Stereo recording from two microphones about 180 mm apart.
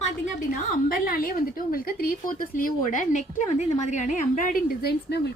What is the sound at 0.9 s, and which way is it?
A woman's voice, 50° left (ahead or behind).